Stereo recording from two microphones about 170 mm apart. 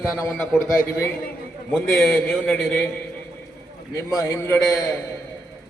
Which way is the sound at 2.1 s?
5° left (ahead or behind).